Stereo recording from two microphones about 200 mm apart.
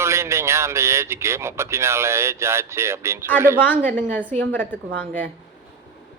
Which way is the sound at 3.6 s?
10° left (ahead or behind).